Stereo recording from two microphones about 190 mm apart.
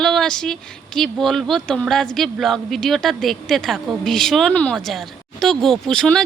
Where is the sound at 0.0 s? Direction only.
Centre (ahead or behind).